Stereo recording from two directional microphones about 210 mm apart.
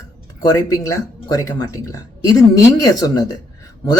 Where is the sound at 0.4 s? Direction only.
15° left (ahead or behind).